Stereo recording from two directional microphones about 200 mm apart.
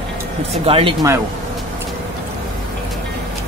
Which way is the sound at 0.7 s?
25° right (ahead or behind).